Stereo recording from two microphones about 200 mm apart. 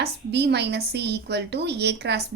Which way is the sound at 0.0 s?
55° right (ahead or behind).